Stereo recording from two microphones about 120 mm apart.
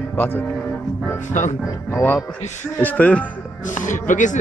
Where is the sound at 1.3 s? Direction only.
90° left.